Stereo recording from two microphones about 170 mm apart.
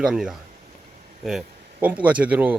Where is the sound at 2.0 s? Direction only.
10° right (ahead or behind).